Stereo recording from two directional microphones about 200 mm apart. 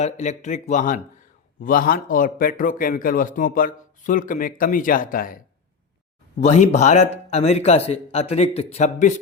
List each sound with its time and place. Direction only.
0.0 s a man's voice: 35° left (ahead or behind)
6.4 s a man's voice: 35° left (ahead or behind)